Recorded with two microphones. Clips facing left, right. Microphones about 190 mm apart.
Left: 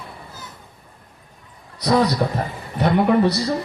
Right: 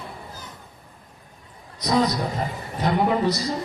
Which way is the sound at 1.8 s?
65° left (ahead or behind).